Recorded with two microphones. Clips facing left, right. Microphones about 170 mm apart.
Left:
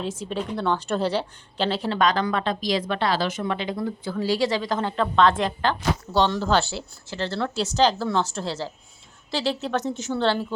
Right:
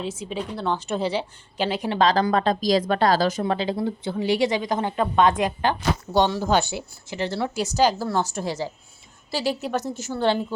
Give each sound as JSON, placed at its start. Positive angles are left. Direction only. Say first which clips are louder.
{"t": 0.2, "sound": "speech", "louder": "left 2 dB", "side_deg": -5}
{"t": 2.0, "sound": "speech", "louder": "right 4 dB", "side_deg": -35}